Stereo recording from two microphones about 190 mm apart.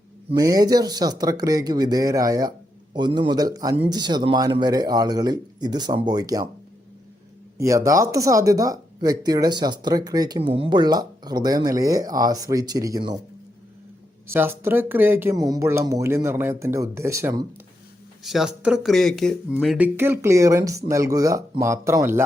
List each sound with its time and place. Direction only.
0.3 s speech: 20° right (ahead or behind)
7.6 s speech: 15° right (ahead or behind)
14.3 s speech: 10° right (ahead or behind)
18.2 s speech: centre (ahead or behind)